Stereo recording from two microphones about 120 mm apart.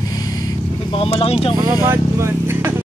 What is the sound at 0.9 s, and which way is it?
Speech, 50° left (ahead or behind).